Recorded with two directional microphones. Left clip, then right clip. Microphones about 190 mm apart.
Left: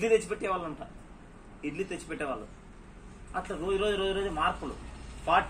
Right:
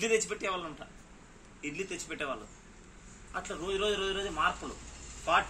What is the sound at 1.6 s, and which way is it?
Speech, 15° right (ahead or behind).